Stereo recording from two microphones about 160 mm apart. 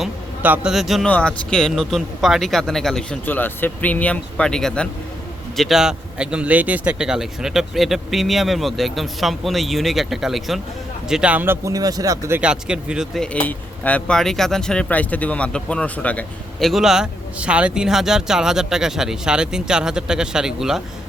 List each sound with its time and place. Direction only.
0.0 s a sound: 5° right (ahead or behind)
1.1 s speech: 5° left (ahead or behind); by 12.4 s 20° right (ahead or behind)
12.4 s speech: 5° right (ahead or behind)
13.2 s speech: 10° left (ahead or behind)